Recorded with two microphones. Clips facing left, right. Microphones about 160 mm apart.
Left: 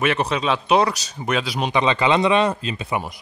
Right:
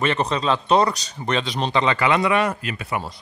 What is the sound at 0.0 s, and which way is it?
Speech, 5° left (ahead or behind).